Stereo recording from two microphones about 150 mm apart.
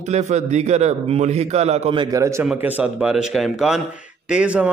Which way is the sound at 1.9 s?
20° right (ahead or behind).